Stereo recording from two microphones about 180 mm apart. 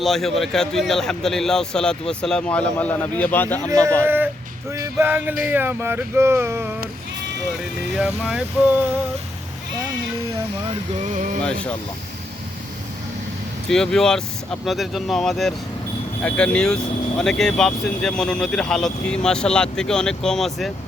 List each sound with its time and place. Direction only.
0.0 s speech: centre (ahead or behind)
4.0 s speech: 10° right (ahead or behind)
7.9 s speech: 5° right (ahead or behind)
11.0 s speech: 45° right (ahead or behind)
13.7 s speech: 5° left (ahead or behind)